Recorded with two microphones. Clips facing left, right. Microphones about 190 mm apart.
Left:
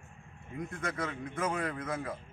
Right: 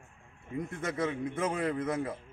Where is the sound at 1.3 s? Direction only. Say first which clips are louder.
Right 3 dB; 25° right (ahead or behind).